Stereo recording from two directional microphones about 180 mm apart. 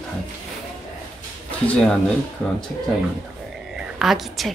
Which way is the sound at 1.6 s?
5° left (ahead or behind).